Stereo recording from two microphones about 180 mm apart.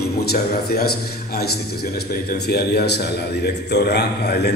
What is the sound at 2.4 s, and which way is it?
A man's voice, 65° left (ahead or behind).